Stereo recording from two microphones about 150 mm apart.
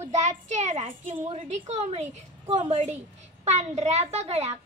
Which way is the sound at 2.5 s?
40° right (ahead or behind).